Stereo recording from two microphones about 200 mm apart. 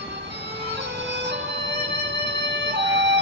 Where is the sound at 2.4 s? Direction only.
60° right (ahead or behind).